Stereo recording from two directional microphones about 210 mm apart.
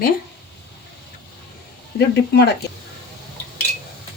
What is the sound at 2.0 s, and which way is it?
Speech, 50° left (ahead or behind).